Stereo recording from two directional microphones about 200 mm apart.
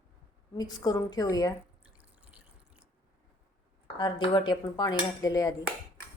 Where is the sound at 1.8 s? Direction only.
5° right (ahead or behind).